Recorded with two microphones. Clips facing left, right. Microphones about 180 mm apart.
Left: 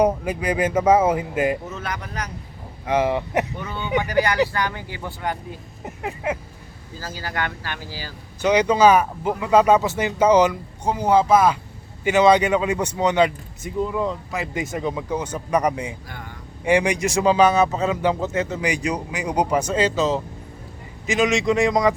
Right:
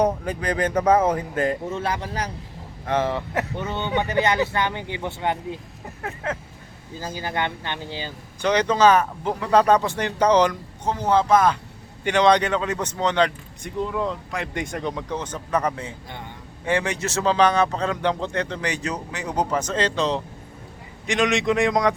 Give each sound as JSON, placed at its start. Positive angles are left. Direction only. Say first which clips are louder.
{"t": 0.0, "sound": "speech", "louder": "left 2 dB", "side_deg": 10}
{"t": 1.7, "sound": "speech", "louder": "right 4 dB", "side_deg": -30}
{"t": 2.8, "sound": "speech", "louder": "left 3 dB", "side_deg": 10}
{"t": 3.6, "sound": "speech", "louder": "even", "side_deg": -25}
{"t": 5.8, "sound": "speech", "louder": "left 4 dB", "side_deg": 15}
{"t": 7.0, "sound": "speech", "louder": "right 2 dB", "side_deg": -20}
{"t": 8.4, "sound": "speech", "louder": "left 2 dB", "side_deg": 10}